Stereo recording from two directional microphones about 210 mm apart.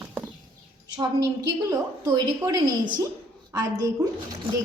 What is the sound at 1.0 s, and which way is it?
A woman's voice, 15° right (ahead or behind).